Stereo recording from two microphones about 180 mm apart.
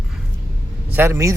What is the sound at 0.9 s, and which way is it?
Speech, 15° right (ahead or behind).